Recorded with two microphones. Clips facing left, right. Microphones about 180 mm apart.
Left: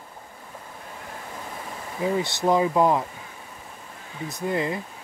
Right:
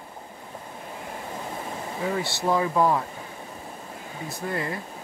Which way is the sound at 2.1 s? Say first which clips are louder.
Left 3 dB; 20° left (ahead or behind).